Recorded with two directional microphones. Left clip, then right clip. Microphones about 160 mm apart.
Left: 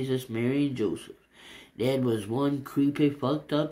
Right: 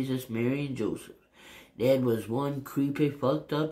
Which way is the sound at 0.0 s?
30° left (ahead or behind).